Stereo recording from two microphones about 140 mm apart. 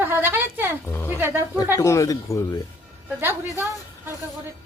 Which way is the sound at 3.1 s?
15° right (ahead or behind).